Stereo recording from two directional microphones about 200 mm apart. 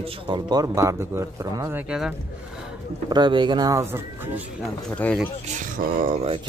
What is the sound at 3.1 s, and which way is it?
Speech, 20° right (ahead or behind).